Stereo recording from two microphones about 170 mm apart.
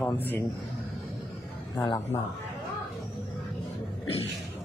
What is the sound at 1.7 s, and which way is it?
Speech, 20° left (ahead or behind).